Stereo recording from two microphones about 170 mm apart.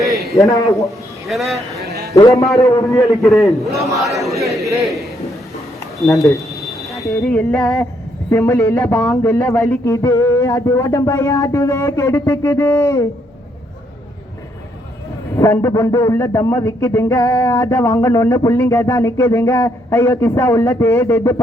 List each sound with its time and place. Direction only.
0.3 s a man's voice: 20° left (ahead or behind)
1.3 s a man's voice: centre (ahead or behind)
2.1 s a man's voice: 20° left (ahead or behind)
3.7 s speech: 20° right (ahead or behind)
4.4 s a man's voice: centre (ahead or behind)
6.0 s a sound: centre (ahead or behind)
7.2 s a man's voice: 10° left (ahead or behind)
15.4 s a man's voice: 15° left (ahead or behind)